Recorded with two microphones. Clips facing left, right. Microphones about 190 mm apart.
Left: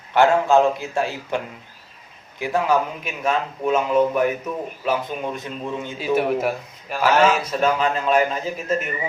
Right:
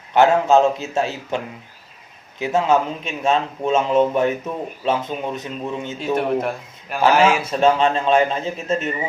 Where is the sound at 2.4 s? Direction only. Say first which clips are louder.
Right 2 dB; 25° right (ahead or behind).